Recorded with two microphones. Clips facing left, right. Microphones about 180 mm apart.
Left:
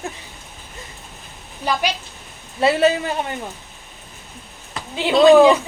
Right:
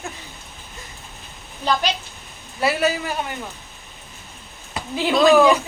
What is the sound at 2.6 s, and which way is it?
Speech, 25° left (ahead or behind).